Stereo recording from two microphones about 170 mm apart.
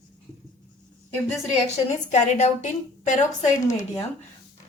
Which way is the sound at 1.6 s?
40° left (ahead or behind).